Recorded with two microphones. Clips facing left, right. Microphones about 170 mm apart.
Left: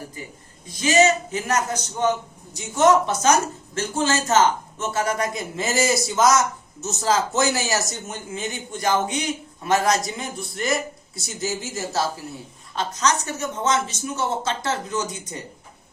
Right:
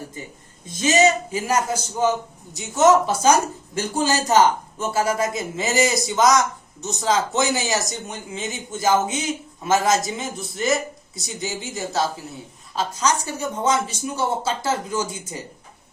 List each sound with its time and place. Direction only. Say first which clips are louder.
0.7 s speech: even; 20° right (ahead or behind)